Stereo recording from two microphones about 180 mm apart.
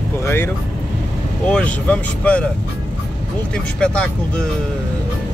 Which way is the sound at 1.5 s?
5° left (ahead or behind).